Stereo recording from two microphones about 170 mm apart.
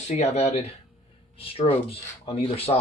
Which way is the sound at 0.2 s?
40° left (ahead or behind).